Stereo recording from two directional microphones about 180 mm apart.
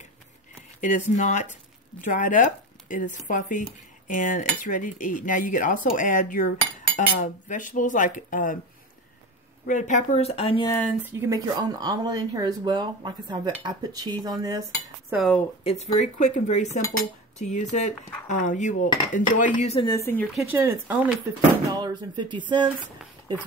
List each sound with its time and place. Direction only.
0.7 s speech: 45° left (ahead or behind)
9.7 s speech: 45° left (ahead or behind)
10.7 s speech: 5° left (ahead or behind)
11.0 s speech: 10° right (ahead or behind)
15.0 s cutlery: 5° right (ahead or behind)
15.6 s speech: 35° left (ahead or behind)
19.8 s speech: 20° left (ahead or behind)
20.3 s speech: 15° right (ahead or behind)
21.7 s speech: 25° right (ahead or behind)